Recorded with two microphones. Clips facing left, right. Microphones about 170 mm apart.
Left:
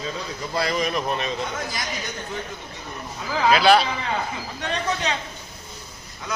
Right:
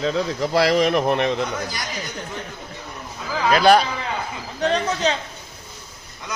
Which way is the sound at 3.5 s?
45° right (ahead or behind).